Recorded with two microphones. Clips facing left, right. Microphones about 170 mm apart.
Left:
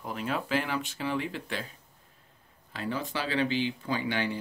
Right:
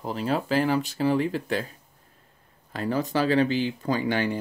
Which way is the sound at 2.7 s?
45° right (ahead or behind).